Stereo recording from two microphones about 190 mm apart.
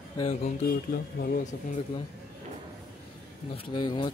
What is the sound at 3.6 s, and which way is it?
Speech, 25° left (ahead or behind).